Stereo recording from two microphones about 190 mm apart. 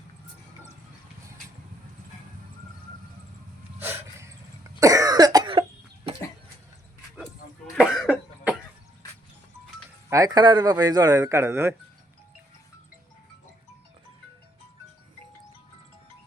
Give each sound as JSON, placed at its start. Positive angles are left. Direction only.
{"t": 3.8, "sound": "a sound", "side_deg": -10}
{"t": 4.8, "sound": "cough", "side_deg": -15}
{"t": 7.8, "sound": "cough", "side_deg": -5}
{"t": 10.1, "sound": "speech", "side_deg": -20}